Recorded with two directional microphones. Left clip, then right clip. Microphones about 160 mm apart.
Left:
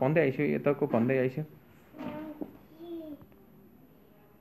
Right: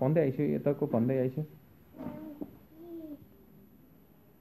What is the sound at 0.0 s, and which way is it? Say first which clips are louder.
Speech: left 2 dB; 20° right (ahead or behind).